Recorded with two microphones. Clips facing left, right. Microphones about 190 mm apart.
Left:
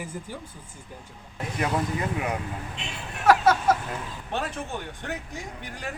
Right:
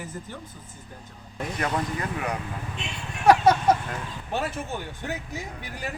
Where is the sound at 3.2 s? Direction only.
15° right (ahead or behind).